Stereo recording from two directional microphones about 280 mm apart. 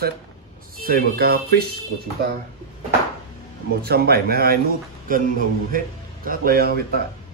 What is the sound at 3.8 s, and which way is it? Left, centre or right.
Speech, right.